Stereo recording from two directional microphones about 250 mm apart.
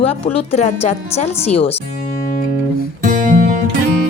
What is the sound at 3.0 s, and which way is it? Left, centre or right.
Music, right.